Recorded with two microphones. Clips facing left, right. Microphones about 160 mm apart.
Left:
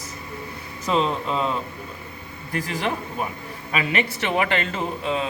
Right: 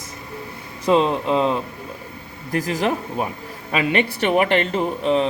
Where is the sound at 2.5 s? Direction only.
40° right (ahead or behind).